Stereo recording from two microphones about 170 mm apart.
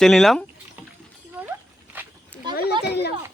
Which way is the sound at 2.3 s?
10° left (ahead or behind).